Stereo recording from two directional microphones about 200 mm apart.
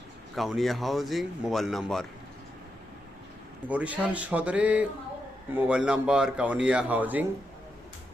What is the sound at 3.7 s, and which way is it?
Speech, 5° right (ahead or behind).